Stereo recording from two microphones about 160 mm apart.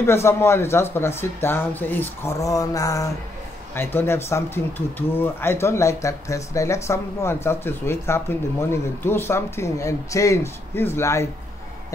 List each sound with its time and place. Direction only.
0.0 s speech: 15° left (ahead or behind)